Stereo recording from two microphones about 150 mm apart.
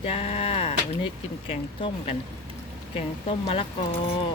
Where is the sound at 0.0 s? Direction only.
40° left (ahead or behind).